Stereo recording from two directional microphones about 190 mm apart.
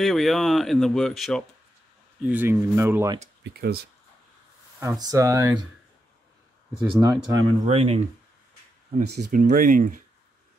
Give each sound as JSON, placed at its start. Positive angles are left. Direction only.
{"t": 0.0, "sound": "speech", "side_deg": 0}
{"t": 2.2, "sound": "speech", "side_deg": -10}
{"t": 3.4, "sound": "speech", "side_deg": -60}
{"t": 4.7, "sound": "speech", "side_deg": -20}
{"t": 6.8, "sound": "speech", "side_deg": -20}
{"t": 7.6, "sound": "speech", "side_deg": -30}
{"t": 9.3, "sound": "speech", "side_deg": -45}